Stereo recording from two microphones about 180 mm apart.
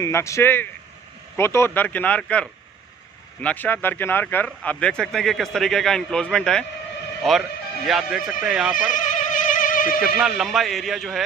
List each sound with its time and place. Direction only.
0.0 s speech: 15° left (ahead or behind); by 8.7 s 5° right (ahead or behind)
8.9 s a sound: 45° left (ahead or behind)
10.1 s speech: 5° right (ahead or behind)